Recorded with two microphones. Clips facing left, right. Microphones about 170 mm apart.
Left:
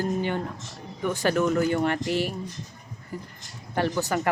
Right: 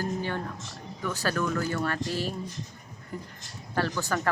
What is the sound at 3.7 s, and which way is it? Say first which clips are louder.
Speech: left 3 dB; 20° left (ahead or behind).